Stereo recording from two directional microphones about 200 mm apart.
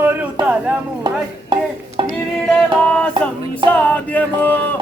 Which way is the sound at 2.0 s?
25° right (ahead or behind).